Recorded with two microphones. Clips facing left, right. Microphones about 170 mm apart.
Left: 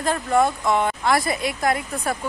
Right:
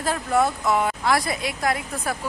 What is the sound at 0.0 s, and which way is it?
Speech, 5° right (ahead or behind).